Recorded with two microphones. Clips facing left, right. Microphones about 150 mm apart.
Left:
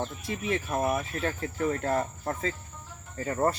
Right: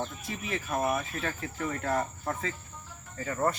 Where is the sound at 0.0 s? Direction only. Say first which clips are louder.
Left 3 dB; 25° left (ahead or behind).